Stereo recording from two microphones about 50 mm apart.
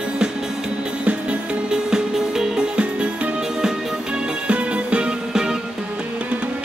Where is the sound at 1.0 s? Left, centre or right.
Right.